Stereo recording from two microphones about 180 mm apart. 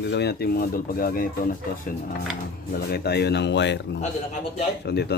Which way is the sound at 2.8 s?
65° left (ahead or behind).